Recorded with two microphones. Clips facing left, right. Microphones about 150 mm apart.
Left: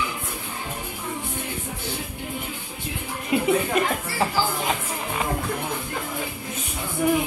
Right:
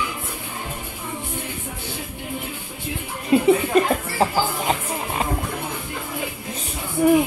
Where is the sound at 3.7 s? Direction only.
35° right (ahead or behind).